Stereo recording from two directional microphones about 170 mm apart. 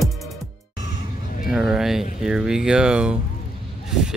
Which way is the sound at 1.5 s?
Centre (ahead or behind).